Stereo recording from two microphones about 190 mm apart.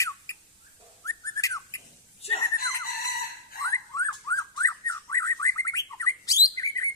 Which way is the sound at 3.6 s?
15° left (ahead or behind).